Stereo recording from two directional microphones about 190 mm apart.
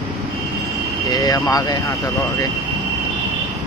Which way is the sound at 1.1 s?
20° left (ahead or behind).